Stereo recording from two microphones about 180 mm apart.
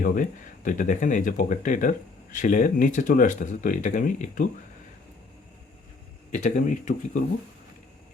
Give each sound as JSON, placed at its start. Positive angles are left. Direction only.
{"t": 0.0, "sound": "speech", "side_deg": 50}
{"t": 6.3, "sound": "speech", "side_deg": 45}